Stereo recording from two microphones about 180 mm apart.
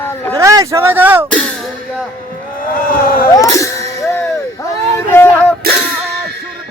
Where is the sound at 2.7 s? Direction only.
50° left (ahead or behind).